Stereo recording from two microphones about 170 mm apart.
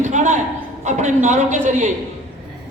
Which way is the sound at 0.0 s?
45° right (ahead or behind).